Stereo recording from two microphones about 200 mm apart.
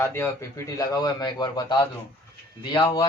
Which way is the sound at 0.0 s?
10° left (ahead or behind).